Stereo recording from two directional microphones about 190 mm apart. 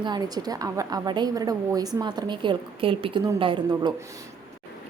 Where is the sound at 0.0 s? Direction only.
20° right (ahead or behind).